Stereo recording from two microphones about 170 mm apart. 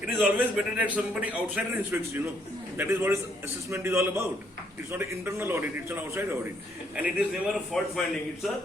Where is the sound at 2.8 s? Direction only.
15° right (ahead or behind).